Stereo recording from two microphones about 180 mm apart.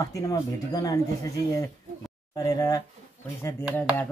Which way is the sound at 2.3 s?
20° left (ahead or behind).